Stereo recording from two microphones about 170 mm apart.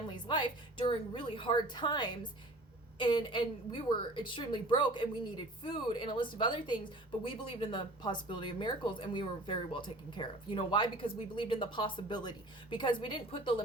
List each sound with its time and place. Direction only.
0.1 s speech: 25° left (ahead or behind)